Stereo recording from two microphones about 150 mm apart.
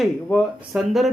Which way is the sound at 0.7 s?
Centre (ahead or behind).